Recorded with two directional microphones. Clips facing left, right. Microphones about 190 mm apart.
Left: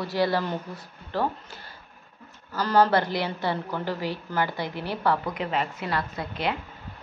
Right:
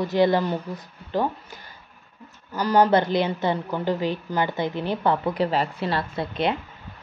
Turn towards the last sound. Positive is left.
turn(degrees=-25)  # may be behind; listen again after turning